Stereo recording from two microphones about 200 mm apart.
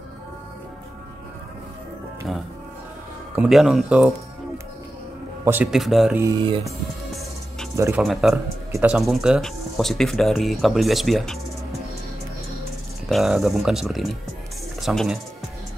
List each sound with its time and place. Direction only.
2.3 s speech: centre (ahead or behind)
5.4 s speech: 10° right (ahead or behind)
6.2 s speech: 25° right (ahead or behind)
7.7 s speech: 15° right (ahead or behind)
8.0 s speech: centre (ahead or behind)
13.1 s speech: centre (ahead or behind)